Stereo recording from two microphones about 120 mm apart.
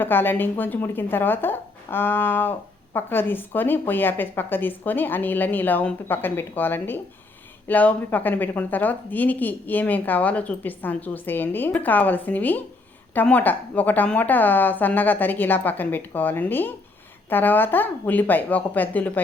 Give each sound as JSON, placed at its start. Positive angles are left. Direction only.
{"t": 0.0, "sound": "speech", "side_deg": 15}